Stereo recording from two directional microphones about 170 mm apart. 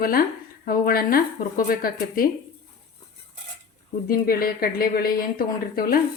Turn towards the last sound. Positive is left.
turn(degrees=60)  # may be behind; listen again after turning